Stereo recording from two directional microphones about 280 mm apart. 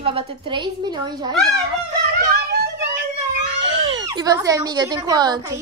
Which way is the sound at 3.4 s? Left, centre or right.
Right.